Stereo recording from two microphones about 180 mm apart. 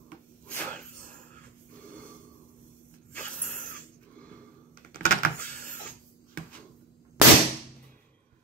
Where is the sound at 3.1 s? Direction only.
45° right (ahead or behind).